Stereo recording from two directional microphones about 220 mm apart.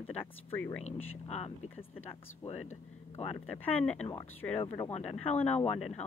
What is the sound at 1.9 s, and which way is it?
Speech, 25° left (ahead or behind).